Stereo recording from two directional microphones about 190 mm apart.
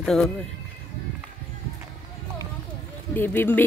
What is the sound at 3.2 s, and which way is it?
Speech, 10° left (ahead or behind).